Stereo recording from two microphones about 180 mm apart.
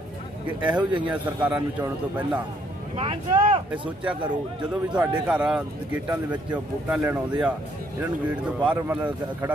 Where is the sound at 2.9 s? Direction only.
30° right (ahead or behind).